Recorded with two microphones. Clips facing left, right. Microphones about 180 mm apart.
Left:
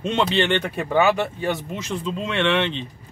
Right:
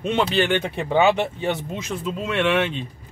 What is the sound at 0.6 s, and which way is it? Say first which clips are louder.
Speech: right 1 dB; 20° right (ahead or behind).